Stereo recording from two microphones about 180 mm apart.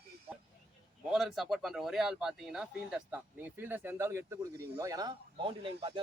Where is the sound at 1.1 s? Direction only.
Centre (ahead or behind).